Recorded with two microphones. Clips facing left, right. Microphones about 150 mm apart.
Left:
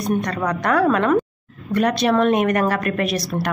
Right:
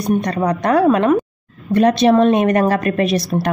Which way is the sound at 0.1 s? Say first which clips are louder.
Right 5 dB; 20° right (ahead or behind).